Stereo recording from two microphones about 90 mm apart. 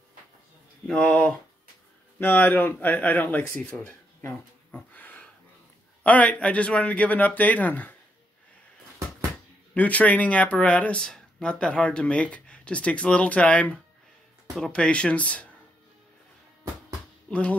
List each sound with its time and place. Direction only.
0.8 s speech: 15° left (ahead or behind)
3.5 s speech: 10° left (ahead or behind)
4.3 s a sound: 15° left (ahead or behind)
6.0 s speech: 15° left (ahead or behind)
9.8 s speech: 15° left (ahead or behind)
17.3 s speech: 15° left (ahead or behind)